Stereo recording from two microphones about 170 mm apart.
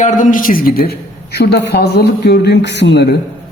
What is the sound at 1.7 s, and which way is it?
Speech, 75° left (ahead or behind).